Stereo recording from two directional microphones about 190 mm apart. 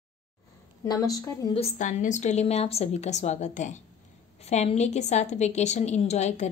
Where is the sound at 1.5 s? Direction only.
35° left (ahead or behind).